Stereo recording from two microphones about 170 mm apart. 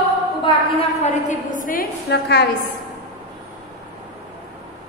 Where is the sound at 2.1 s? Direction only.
75° left (ahead or behind).